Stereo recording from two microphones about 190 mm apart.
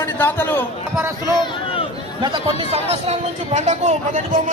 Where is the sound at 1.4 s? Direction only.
25° left (ahead or behind).